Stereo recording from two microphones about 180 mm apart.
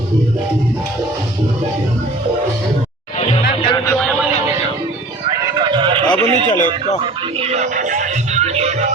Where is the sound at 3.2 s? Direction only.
35° left (ahead or behind).